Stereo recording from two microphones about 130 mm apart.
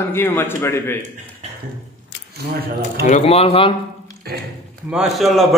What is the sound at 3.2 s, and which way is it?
Speech, 50° left (ahead or behind).